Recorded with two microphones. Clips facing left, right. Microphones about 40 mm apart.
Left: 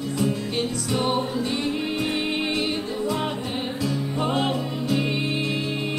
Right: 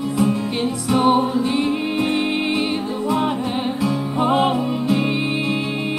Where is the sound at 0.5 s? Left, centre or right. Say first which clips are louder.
Right 5 dB; centre.